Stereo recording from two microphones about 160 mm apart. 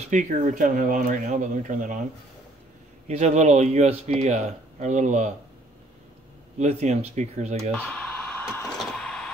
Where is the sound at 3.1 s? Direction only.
40° right (ahead or behind).